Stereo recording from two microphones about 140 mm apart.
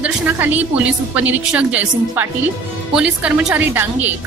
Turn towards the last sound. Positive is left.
turn(degrees=-10)  # may be behind; listen again after turning